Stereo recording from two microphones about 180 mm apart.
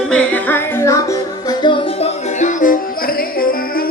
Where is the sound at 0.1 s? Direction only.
5° left (ahead or behind).